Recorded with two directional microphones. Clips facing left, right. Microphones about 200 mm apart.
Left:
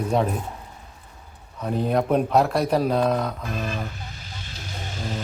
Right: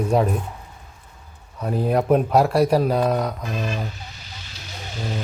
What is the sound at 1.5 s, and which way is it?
Speech, 5° right (ahead or behind).